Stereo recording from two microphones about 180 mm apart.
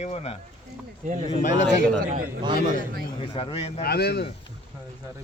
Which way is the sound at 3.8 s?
65° left (ahead or behind).